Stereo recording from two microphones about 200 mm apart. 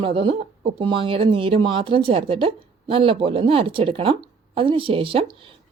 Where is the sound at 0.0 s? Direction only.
25° right (ahead or behind).